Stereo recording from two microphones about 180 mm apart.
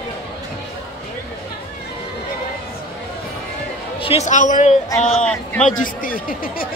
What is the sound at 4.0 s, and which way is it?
A man's voice, 35° left (ahead or behind).